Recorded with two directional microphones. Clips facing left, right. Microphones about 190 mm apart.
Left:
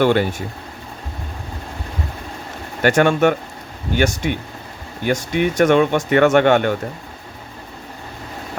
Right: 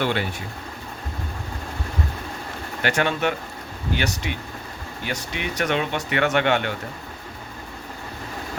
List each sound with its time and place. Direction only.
0.0 s speech: 45° left (ahead or behind)
2.8 s speech: 50° left (ahead or behind)